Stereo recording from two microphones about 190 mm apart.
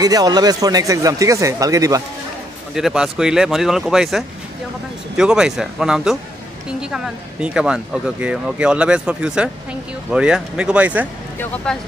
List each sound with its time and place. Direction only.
0.0 s speech: 20° right (ahead or behind)
2.7 s speech: 5° right (ahead or behind)
11.3 s speech: 5° left (ahead or behind)